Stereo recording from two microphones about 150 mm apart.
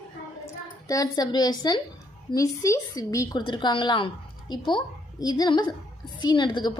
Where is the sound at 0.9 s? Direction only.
25° left (ahead or behind).